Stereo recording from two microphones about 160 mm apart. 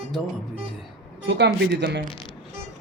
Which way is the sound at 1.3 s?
90° right.